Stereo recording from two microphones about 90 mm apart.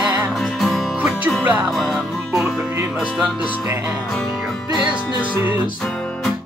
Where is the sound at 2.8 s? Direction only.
25° right (ahead or behind).